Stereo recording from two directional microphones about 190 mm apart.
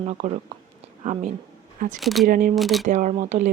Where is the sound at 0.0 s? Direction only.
35° right (ahead or behind).